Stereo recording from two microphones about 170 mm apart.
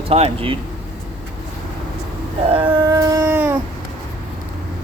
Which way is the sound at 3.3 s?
10° right (ahead or behind).